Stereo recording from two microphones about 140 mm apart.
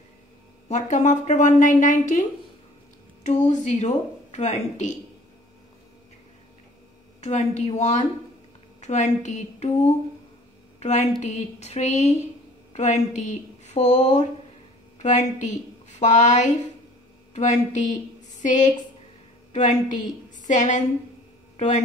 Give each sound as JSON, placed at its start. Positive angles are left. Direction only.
{"t": 0.7, "sound": "speech", "side_deg": 55}
{"t": 3.3, "sound": "speech", "side_deg": 60}
{"t": 7.2, "sound": "a woman's voice", "side_deg": 55}
{"t": 12.7, "sound": "a sound", "side_deg": 55}
{"t": 15.0, "sound": "a woman's voice", "side_deg": 60}